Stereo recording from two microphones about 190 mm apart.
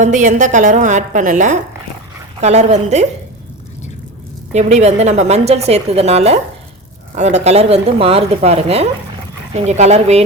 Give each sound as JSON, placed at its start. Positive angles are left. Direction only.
{"t": 0.0, "sound": "a woman's voice", "side_deg": -40}
{"t": 4.5, "sound": "a woman's voice", "side_deg": -35}